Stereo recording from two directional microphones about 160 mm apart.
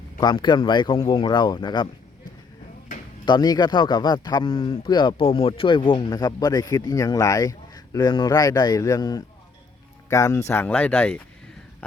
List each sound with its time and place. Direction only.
0.2 s speech: 30° left (ahead or behind)
3.2 s speech: 25° left (ahead or behind); by 11.2 s 10° left (ahead or behind)